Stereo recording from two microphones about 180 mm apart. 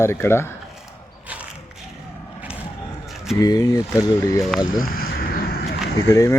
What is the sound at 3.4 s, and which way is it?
Speech, 20° left (ahead or behind).